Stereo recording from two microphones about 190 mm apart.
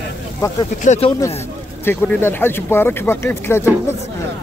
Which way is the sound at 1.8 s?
10° left (ahead or behind).